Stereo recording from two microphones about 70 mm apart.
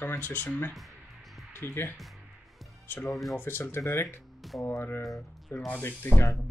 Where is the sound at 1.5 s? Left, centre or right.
Left.